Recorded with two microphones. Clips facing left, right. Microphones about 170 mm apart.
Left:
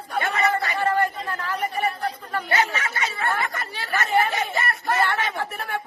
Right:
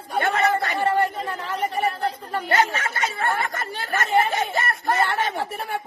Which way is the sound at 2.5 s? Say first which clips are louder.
Right 3 dB; 50° right (ahead or behind).